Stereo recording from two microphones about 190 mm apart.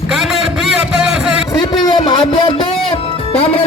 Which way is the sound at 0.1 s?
Centre (ahead or behind).